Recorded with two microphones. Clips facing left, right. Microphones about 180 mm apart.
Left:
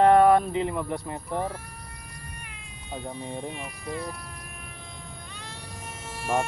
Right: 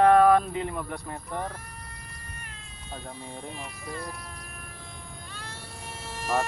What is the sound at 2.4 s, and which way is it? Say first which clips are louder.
Cat: left 1 dB; 15° left (ahead or behind).